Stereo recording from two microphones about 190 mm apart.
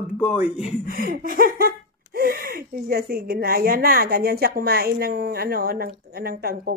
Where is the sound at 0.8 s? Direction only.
50° right (ahead or behind).